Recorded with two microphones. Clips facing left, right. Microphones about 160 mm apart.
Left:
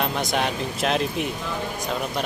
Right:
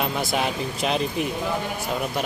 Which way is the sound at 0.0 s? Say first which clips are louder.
Even; centre (ahead or behind).